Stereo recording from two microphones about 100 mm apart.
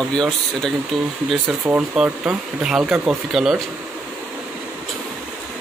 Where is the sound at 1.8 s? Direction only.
10° right (ahead or behind).